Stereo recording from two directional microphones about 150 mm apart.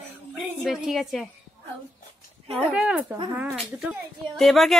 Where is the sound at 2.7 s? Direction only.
10° right (ahead or behind).